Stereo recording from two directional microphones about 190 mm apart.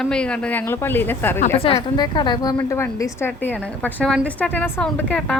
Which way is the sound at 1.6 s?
25° left (ahead or behind).